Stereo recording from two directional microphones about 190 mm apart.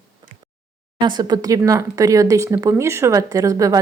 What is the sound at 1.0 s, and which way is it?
Speech, 20° right (ahead or behind).